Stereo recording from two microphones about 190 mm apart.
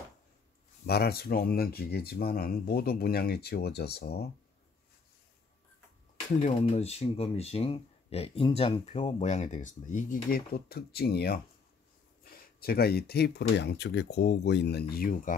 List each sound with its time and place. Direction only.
0.8 s speech: 55° left (ahead or behind)
6.4 s speech: 35° left (ahead or behind)